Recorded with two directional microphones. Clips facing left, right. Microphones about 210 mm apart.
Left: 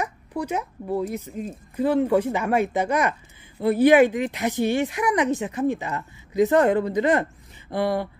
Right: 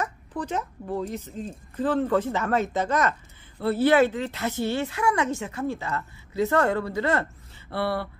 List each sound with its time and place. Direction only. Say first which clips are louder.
0.0 s speech: left 3 dB; 10° left (ahead or behind)